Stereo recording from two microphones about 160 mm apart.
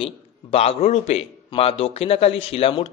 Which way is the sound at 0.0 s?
40° left (ahead or behind).